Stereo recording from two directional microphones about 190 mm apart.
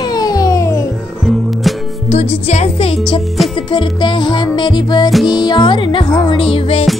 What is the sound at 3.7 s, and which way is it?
Music, 25° left (ahead or behind).